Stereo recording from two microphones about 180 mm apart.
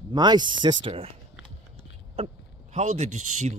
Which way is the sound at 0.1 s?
25° right (ahead or behind).